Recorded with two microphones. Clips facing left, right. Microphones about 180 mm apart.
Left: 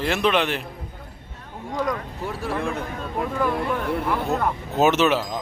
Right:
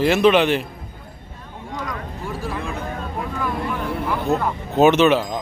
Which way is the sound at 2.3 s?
60° left (ahead or behind).